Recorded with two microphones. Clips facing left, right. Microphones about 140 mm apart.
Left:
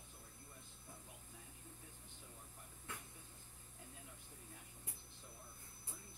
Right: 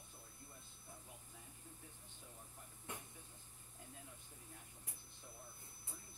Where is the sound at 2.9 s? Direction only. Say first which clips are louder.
Right 2 dB; 20° right (ahead or behind).